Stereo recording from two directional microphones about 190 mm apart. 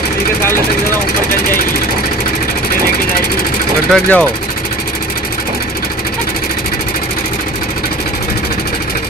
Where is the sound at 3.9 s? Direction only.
5° left (ahead or behind).